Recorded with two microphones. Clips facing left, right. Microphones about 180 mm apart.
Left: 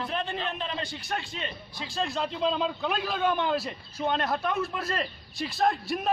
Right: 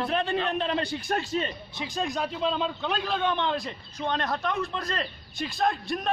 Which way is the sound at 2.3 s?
Centre (ahead or behind).